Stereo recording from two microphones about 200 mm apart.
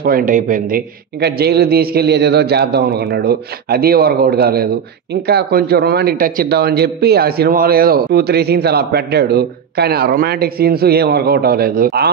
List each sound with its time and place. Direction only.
0.0 s a man's voice: 45° right (ahead or behind)